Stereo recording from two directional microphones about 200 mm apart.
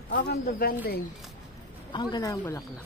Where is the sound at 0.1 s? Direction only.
55° left (ahead or behind).